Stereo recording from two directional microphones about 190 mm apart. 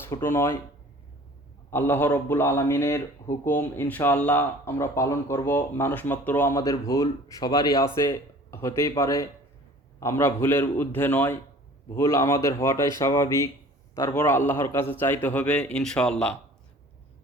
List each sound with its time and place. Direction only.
0.1 s speech: 15° left (ahead or behind)
1.7 s speech: 10° left (ahead or behind)